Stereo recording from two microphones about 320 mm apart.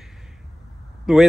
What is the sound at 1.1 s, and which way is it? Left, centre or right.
Speech, centre.